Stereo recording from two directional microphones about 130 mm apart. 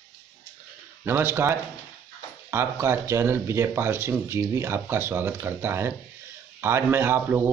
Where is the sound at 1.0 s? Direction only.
15° right (ahead or behind).